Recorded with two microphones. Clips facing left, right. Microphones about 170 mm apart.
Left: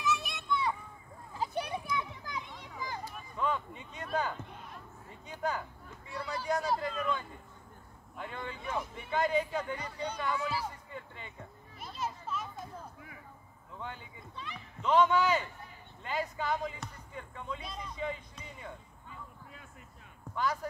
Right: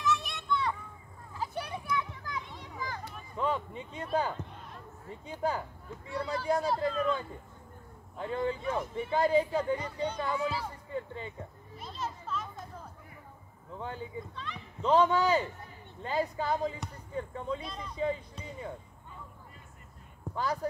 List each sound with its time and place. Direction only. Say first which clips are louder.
0.0 s children playing: right 2 dB; 5° left (ahead or behind)
1.4 s children playing: left 2 dB; 20° left (ahead or behind)
3.3 s speech: right 2 dB; 30° right (ahead or behind)
11.8 s children playing: even; 5° left (ahead or behind)
13.7 s speech: right 6 dB; 35° right (ahead or behind)
14.3 s a child's voice: right 2 dB; 10° left (ahead or behind)
14.8 s speech: right 1 dB; 35° right (ahead or behind)